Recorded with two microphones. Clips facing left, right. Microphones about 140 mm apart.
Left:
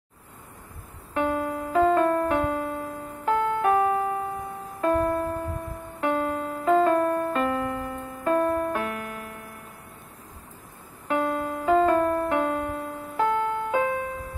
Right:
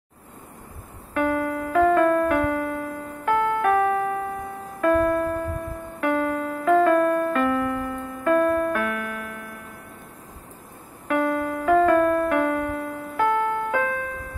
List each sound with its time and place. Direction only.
1.1 s music: 25° left (ahead or behind)
11.1 s music: 25° left (ahead or behind)